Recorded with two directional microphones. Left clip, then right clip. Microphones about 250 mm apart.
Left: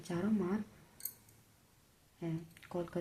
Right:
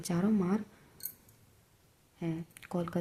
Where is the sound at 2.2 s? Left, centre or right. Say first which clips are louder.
Right 4 dB; right.